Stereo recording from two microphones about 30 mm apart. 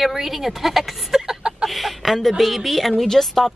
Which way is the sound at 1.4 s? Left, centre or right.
Right.